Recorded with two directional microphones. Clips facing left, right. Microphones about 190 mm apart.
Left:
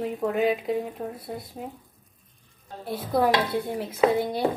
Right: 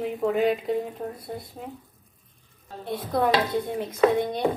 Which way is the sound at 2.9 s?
5° left (ahead or behind).